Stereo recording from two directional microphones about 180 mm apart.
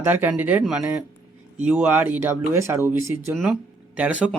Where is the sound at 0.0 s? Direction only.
10° right (ahead or behind).